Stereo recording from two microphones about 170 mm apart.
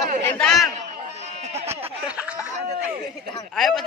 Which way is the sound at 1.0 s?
40° right (ahead or behind).